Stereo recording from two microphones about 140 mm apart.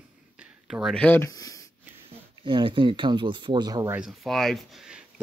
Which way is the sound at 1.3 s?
25° left (ahead or behind).